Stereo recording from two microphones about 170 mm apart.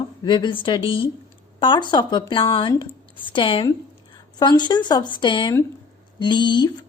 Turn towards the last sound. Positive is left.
turn(degrees=25)  # may be behind; listen again after turning